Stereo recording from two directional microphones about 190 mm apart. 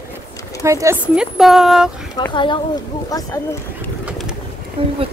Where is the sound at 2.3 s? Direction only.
25° left (ahead or behind).